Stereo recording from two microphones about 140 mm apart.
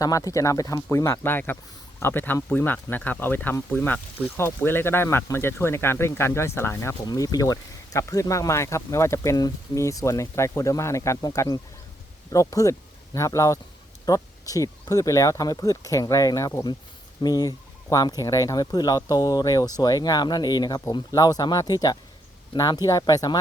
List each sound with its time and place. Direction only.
0.0 s speech: 25° left (ahead or behind)